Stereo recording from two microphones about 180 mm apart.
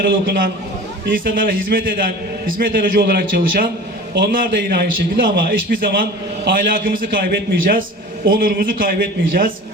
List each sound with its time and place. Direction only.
0.0 s a man's voice: 60° right (ahead or behind)